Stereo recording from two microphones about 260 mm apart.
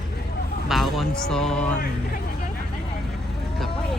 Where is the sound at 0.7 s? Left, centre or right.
Centre.